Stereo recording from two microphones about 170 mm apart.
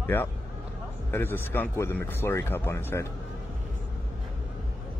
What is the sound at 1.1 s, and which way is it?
Speech, 10° left (ahead or behind).